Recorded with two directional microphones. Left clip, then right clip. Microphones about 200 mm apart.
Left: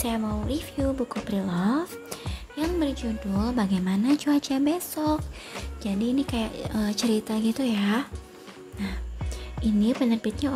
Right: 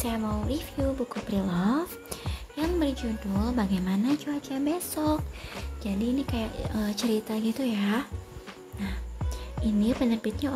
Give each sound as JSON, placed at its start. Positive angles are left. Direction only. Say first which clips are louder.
{"t": 0.0, "sound": "a woman's voice", "louder": "left 2 dB", "side_deg": 5}
{"t": 4.2, "sound": "speech", "louder": "left 7 dB", "side_deg": 20}
{"t": 4.6, "sound": "speech", "louder": "left 2 dB", "side_deg": 5}